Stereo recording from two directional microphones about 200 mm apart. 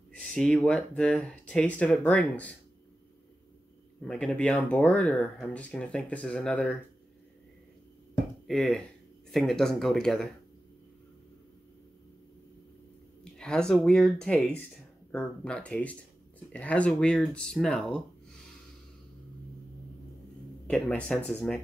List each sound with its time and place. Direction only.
0.1 s speech: 5° left (ahead or behind)
4.0 s speech: 5° left (ahead or behind)
8.5 s speech: centre (ahead or behind)
13.2 s speech: 5° left (ahead or behind)
20.6 s speech: 5° left (ahead or behind)